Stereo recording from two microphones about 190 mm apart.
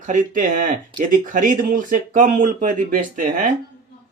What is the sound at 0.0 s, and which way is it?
Speech, 45° right (ahead or behind).